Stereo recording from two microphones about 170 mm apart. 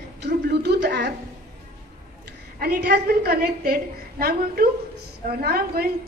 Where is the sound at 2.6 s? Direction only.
70° right (ahead or behind).